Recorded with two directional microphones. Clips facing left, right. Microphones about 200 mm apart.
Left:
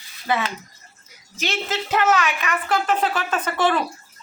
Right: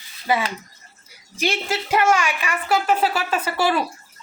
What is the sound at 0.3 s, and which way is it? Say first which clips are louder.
A woman's voice: right 1 dB; 10° right (ahead or behind).